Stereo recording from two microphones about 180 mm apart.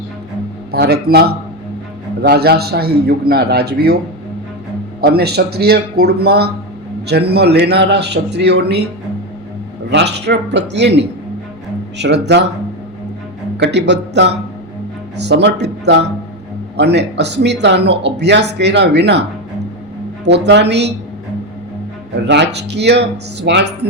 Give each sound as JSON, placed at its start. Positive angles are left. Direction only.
{"t": 0.7, "sound": "a man's voice", "side_deg": -60}
{"t": 9.9, "sound": "speech", "side_deg": -70}
{"t": 13.6, "sound": "speech", "side_deg": -70}
{"t": 22.2, "sound": "speech", "side_deg": -70}